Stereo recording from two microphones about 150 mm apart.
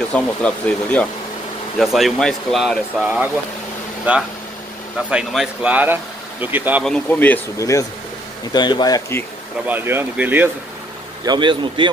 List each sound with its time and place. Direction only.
0.1 s speech: 10° left (ahead or behind)
4.1 s speech: 10° right (ahead or behind)
6.8 s speech: 10° left (ahead or behind); by 9.2 s 25° left (ahead or behind)
9.7 s speech: 15° right (ahead or behind)
11.2 s a man's voice: 30° right (ahead or behind)